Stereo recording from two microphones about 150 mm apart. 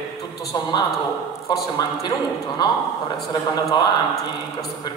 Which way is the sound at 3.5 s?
30° left (ahead or behind).